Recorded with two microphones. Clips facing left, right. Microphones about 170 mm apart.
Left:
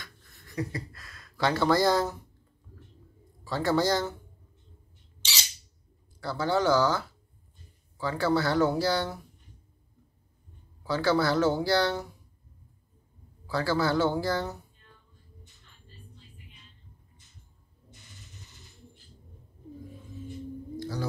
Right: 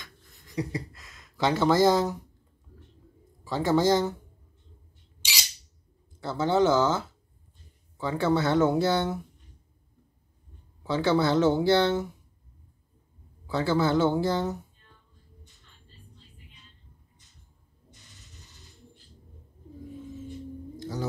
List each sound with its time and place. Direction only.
0.0 s speech: 20° right (ahead or behind)
3.4 s speech: 15° right (ahead or behind)
6.2 s speech: 20° right (ahead or behind)
10.8 s speech: 20° right (ahead or behind)
13.5 s speech: 20° right (ahead or behind)
20.8 s a sound: 20° right (ahead or behind)